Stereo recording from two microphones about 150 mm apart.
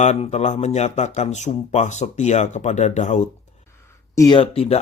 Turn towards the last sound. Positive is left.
turn(degrees=40)  # may be behind; listen again after turning